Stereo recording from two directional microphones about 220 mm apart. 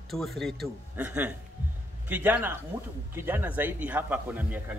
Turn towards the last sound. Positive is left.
turn(degrees=-10)  # may be behind; listen again after turning